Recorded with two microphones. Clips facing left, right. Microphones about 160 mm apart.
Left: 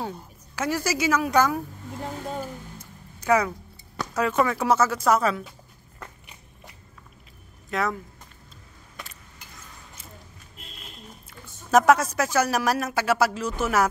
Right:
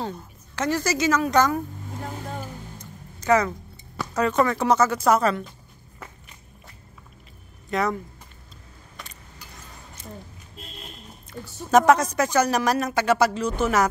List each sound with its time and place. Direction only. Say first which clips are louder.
0.0 s a woman's voice: right 1 dB; 10° left (ahead or behind)
2.3 s music: left 2 dB; 10° left (ahead or behind)
4.1 s speech: right 2 dB; 5° left (ahead or behind)
7.7 s speech: right 2 dB; centre (ahead or behind)
11.3 s a sound: right 10 dB; 5° left (ahead or behind)
11.7 s speech: right 1 dB; 5° left (ahead or behind)